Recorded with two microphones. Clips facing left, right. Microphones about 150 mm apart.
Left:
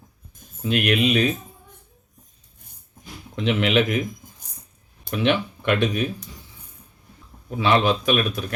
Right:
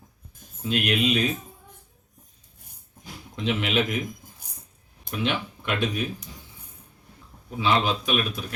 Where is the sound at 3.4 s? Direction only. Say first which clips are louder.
Left 5 dB; 70° left (ahead or behind).